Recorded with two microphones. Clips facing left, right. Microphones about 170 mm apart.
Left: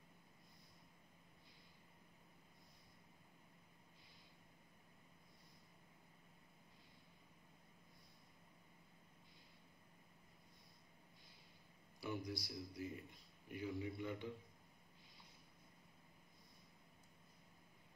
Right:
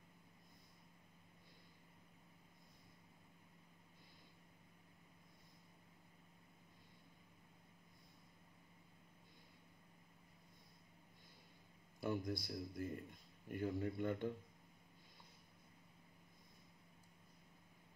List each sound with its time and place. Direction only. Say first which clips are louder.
12.0 s a man's voice: right 4 dB; 50° right (ahead or behind)